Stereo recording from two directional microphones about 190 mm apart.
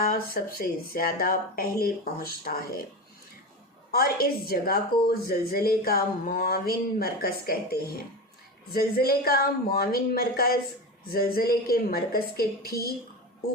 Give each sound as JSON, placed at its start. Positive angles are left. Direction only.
{"t": 0.0, "sound": "a woman's voice", "side_deg": 50}
{"t": 3.9, "sound": "a woman's voice", "side_deg": 55}